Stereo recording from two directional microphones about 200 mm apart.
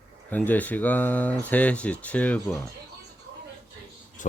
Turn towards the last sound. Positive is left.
turn(degrees=40)  # may be behind; listen again after turning